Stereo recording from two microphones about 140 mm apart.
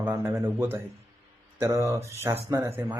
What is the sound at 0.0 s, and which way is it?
Speech, 15° right (ahead or behind).